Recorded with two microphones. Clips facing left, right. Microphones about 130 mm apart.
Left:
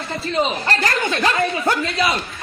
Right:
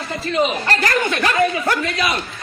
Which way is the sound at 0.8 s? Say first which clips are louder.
Right 2 dB; 25° left (ahead or behind).